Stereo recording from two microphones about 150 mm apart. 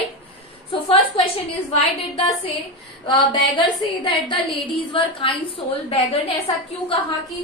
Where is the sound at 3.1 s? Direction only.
30° left (ahead or behind).